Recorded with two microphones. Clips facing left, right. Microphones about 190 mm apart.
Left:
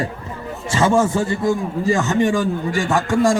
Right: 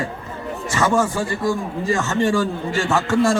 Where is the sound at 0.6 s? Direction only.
25° left (ahead or behind).